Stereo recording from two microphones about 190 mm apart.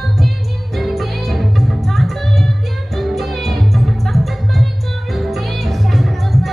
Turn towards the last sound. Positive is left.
turn(degrees=0)  # may be behind; listen again after turning